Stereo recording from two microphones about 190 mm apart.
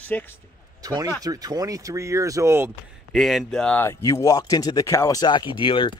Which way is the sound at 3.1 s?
Centre (ahead or behind).